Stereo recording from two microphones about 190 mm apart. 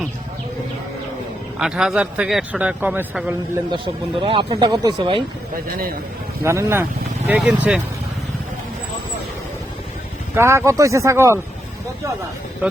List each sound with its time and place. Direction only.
1.5 s speech: 5° right (ahead or behind)
4.2 s speech: 25° right (ahead or behind)
5.6 s a man's voice: 50° right (ahead or behind)
6.4 s speech: 15° right (ahead or behind)
10.3 s speech: 15° right (ahead or behind)